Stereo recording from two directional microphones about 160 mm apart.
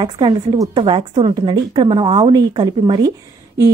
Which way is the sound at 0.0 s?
30° right (ahead or behind).